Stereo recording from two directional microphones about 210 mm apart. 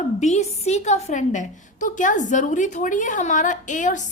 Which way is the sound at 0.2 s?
30° left (ahead or behind).